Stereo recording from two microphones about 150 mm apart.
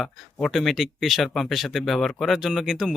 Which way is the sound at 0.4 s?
Centre (ahead or behind).